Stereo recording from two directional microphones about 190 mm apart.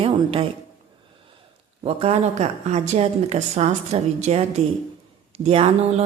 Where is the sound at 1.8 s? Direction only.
30° right (ahead or behind).